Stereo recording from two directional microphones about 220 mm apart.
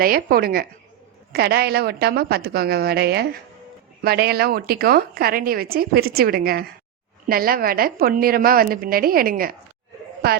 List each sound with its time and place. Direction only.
0.0 s a woman's voice: 40° right (ahead or behind)